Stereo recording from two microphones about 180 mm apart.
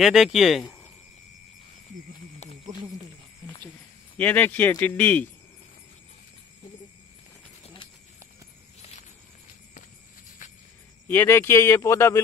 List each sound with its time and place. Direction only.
0.0 s speech: centre (ahead or behind)
2.4 s a sound: 40° left (ahead or behind)
4.2 s speech: 10° left (ahead or behind)
7.6 s a sound: 30° left (ahead or behind)
10.4 s cricket: 45° left (ahead or behind)
11.1 s speech: 10° left (ahead or behind)